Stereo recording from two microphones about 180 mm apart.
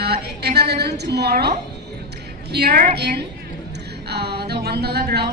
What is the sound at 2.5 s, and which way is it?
Speech, 60° right (ahead or behind).